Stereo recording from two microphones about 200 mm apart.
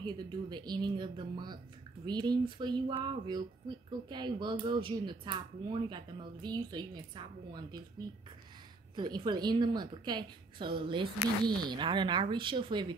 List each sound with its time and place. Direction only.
0.0 s speech: 20° right (ahead or behind)
8.9 s speech: 20° right (ahead or behind)